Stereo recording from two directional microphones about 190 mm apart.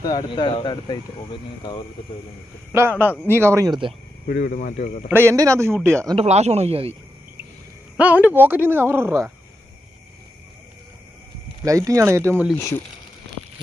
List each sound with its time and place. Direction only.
0.0 s speech: 20° left (ahead or behind)
3.0 s speech: 10° right (ahead or behind)
4.3 s speech: 45° left (ahead or behind)
5.1 s speech: 15° right (ahead or behind)
5.8 s speech: 5° left (ahead or behind)
6.0 s speech: 30° right (ahead or behind)
8.0 s speech: 10° right (ahead or behind)
11.6 s speech: 15° right (ahead or behind)
12.5 s speech: 15° left (ahead or behind)